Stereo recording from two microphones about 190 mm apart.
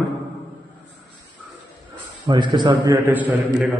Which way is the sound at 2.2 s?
25° right (ahead or behind).